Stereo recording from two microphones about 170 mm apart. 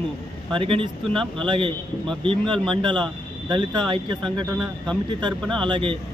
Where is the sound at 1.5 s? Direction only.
30° right (ahead or behind).